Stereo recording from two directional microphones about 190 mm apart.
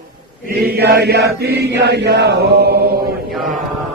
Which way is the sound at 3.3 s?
Centre (ahead or behind).